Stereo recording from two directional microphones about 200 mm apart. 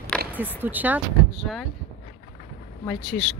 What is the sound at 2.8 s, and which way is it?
Speech, centre (ahead or behind).